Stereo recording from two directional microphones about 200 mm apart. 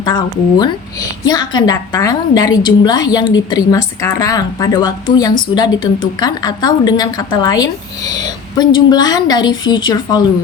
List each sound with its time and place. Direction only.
0.0 s a woman's voice: 20° left (ahead or behind)